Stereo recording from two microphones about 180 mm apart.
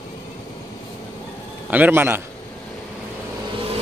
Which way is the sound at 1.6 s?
10° right (ahead or behind).